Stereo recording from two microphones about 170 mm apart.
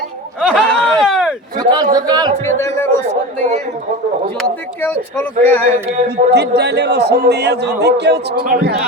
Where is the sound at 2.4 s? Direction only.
15° left (ahead or behind).